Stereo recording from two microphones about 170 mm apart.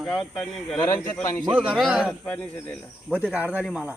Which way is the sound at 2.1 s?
10° left (ahead or behind).